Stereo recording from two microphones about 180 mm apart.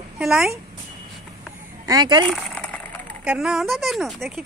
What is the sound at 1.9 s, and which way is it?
Speech, 25° right (ahead or behind).